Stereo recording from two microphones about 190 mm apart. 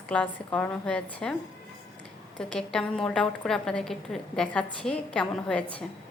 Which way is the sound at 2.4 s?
5° left (ahead or behind).